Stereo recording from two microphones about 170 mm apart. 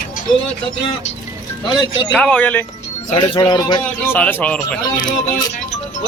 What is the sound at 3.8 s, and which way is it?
Speech, 10° left (ahead or behind).